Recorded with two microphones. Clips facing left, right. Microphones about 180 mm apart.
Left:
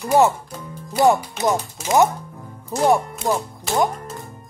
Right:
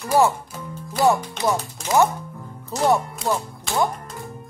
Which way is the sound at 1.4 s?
15° left (ahead or behind).